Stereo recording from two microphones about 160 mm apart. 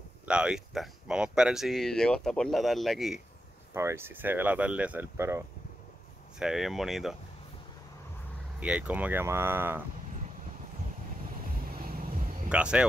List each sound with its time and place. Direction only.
0.3 s speech: 5° right (ahead or behind)
3.7 s speech: 15° right (ahead or behind)
6.4 s speech: centre (ahead or behind)
8.5 s speech: 10° right (ahead or behind)
11.8 s vehicle: 65° right (ahead or behind)
12.4 s speech: 5° right (ahead or behind)